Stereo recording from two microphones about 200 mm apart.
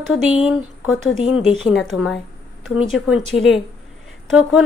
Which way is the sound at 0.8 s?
85° left.